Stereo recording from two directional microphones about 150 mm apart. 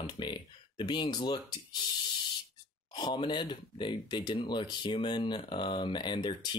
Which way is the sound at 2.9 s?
30° left (ahead or behind).